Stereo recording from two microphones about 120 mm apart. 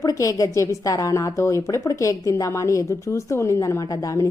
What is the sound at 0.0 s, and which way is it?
Speech, 30° left (ahead or behind).